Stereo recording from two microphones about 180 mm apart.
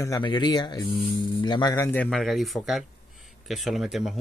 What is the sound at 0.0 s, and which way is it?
Speech, 20° left (ahead or behind).